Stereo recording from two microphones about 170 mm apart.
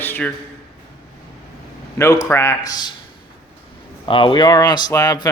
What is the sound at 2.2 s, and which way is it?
Speech, 15° left (ahead or behind).